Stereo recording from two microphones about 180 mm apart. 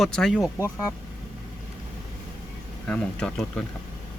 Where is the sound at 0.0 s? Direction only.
Centre (ahead or behind).